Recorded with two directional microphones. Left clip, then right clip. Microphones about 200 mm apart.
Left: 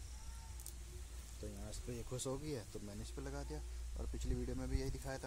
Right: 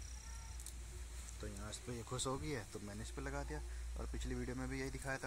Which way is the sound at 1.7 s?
10° right (ahead or behind).